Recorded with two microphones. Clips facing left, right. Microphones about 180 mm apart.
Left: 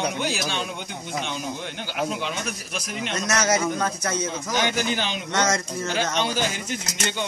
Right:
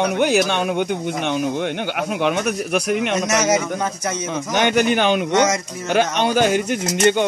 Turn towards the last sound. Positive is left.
turn(degrees=-55)  # may be behind; listen again after turning